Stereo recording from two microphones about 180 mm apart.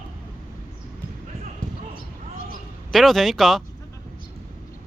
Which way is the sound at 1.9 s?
50° left (ahead or behind).